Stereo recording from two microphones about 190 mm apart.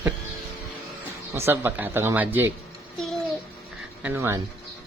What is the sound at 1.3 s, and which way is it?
Speech, 10° right (ahead or behind).